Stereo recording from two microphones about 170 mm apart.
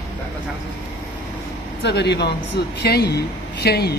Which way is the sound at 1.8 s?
80° left.